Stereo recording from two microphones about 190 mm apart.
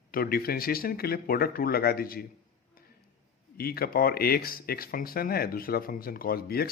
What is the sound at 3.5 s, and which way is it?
Speech, 55° left (ahead or behind).